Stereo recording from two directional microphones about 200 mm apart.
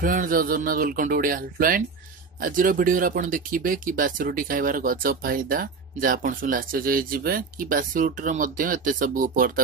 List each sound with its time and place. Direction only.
0.0 s speech: 45° right (ahead or behind)